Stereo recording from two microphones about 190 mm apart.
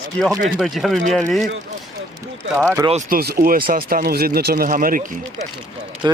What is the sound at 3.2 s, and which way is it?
Speech, 50° right (ahead or behind).